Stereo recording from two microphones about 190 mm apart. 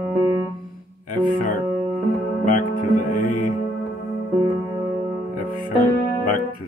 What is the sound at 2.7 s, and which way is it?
Music, 45° left (ahead or behind).